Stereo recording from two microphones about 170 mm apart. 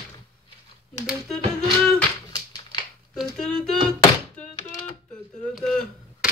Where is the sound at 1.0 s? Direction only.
Centre (ahead or behind).